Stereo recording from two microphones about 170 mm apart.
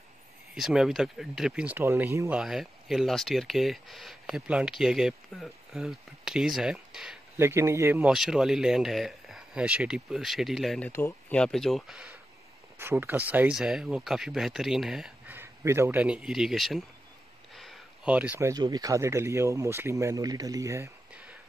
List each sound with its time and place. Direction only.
0.6 s speech: centre (ahead or behind)
7.3 s speech: 15° right (ahead or behind); by 10.9 s centre (ahead or behind)
10.9 s speech: 15° left (ahead or behind)
17.6 s a sound: 5° right (ahead or behind)
18.5 s speech: 25° right (ahead or behind)
21.1 s a sound: 5° right (ahead or behind)